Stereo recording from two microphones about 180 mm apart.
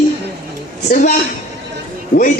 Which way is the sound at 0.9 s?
45° left (ahead or behind).